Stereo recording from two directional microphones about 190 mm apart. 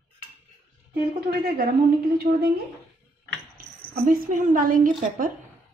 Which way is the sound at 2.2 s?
50° right (ahead or behind).